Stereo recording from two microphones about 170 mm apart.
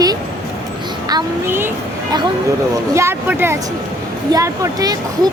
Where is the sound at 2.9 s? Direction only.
15° right (ahead or behind).